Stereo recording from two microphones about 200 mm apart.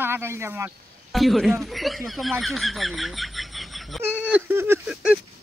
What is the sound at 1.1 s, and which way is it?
A man's voice, centre (ahead or behind).